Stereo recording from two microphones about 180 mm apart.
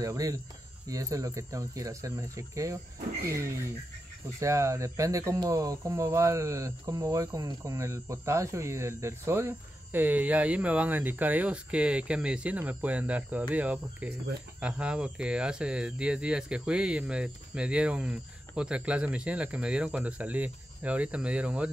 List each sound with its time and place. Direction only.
0.0 s speech: 20° right (ahead or behind)
4.4 s speech: 15° right (ahead or behind)